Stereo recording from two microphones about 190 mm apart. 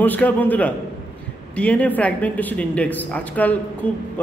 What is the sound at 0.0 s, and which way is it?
Speech, 10° left (ahead or behind).